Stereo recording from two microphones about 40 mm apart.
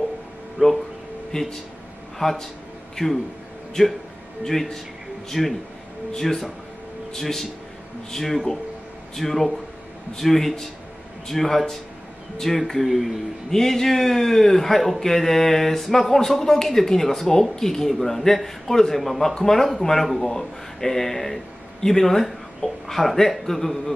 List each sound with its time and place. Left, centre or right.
0.6 s speech: right
1.3 s speech: centre
4.5 s speech: centre
13.5 s speech: centre